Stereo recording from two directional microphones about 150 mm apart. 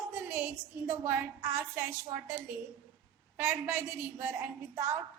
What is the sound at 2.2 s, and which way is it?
A woman's voice, 10° right (ahead or behind).